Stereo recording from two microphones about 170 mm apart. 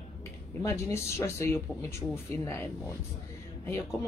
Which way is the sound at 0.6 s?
15° left (ahead or behind).